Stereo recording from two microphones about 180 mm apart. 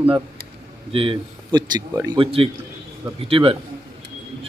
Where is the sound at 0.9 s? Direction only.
25° right (ahead or behind).